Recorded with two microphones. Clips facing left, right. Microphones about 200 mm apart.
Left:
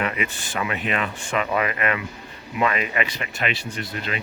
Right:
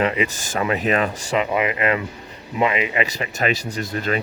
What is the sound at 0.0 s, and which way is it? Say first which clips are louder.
Speech: right 6 dB; 30° right (ahead or behind).